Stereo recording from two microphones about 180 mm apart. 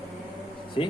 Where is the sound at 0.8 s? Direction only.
30° left (ahead or behind).